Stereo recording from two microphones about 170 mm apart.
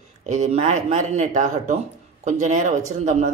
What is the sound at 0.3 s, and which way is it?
Speech, 40° right (ahead or behind).